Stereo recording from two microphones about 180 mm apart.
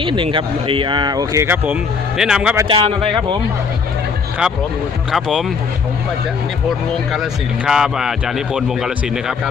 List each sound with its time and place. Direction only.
0.0 s speech: 30° right (ahead or behind); by 2.6 s 5° right (ahead or behind)
2.6 s speech: 30° right (ahead or behind)
5.1 s speech: centre (ahead or behind)
7.1 s speech: 5° right (ahead or behind)